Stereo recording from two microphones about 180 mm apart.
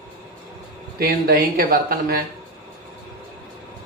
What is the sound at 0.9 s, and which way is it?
Speech, 55° right (ahead or behind).